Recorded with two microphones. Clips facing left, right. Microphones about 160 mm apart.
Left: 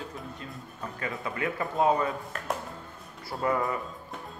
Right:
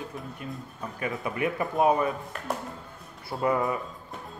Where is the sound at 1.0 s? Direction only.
20° right (ahead or behind).